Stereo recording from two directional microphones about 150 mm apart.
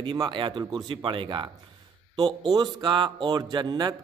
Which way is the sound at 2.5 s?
30° right (ahead or behind).